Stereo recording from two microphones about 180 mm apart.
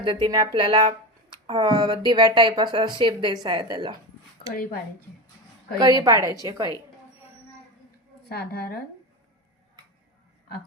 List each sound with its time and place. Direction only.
0.0 s a woman's voice: 25° right (ahead or behind)
5.8 s a woman's voice: 20° right (ahead or behind)
8.3 s speech: 55° left (ahead or behind)